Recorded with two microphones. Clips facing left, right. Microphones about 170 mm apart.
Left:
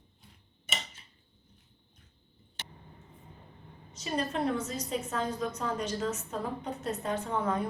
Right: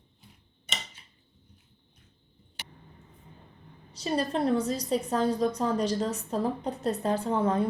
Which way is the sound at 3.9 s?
35° right (ahead or behind).